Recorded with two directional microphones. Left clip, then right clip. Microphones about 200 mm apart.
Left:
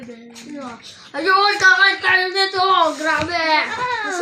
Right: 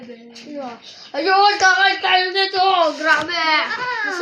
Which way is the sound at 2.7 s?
5° left (ahead or behind).